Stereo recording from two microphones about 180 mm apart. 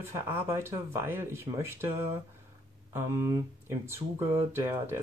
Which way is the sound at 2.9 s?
15° right (ahead or behind).